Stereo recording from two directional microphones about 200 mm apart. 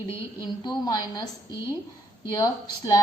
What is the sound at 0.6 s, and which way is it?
A woman's voice, 20° left (ahead or behind).